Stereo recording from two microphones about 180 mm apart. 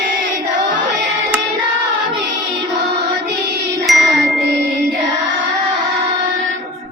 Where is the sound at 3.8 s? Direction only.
Centre (ahead or behind).